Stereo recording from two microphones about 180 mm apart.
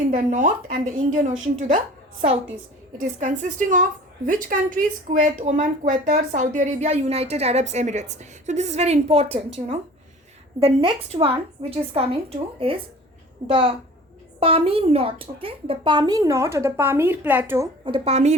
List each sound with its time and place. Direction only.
0.1 s a woman's voice: 45° right (ahead or behind)
3.2 s a woman's voice: 40° right (ahead or behind); by 17.7 s 10° right (ahead or behind)
17.8 s speech: 30° right (ahead or behind)